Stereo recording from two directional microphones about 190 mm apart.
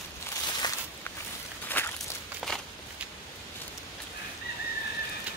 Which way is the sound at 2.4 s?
Centre (ahead or behind).